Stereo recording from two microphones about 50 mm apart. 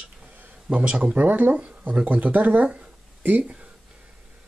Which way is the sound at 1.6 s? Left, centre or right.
Right.